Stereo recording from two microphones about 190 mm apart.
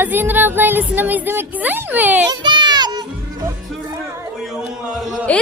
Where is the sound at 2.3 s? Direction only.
25° right (ahead or behind).